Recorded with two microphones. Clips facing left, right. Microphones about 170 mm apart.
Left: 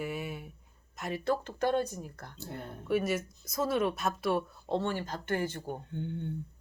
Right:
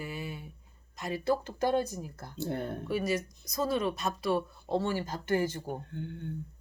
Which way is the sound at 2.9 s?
5° left (ahead or behind).